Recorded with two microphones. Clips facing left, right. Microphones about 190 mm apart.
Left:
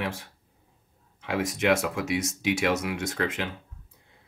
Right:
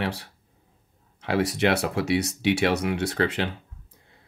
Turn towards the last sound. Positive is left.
turn(degrees=-35)  # may be behind; listen again after turning